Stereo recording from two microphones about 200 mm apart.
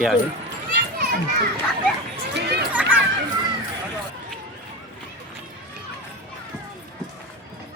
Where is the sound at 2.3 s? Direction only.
50° right (ahead or behind).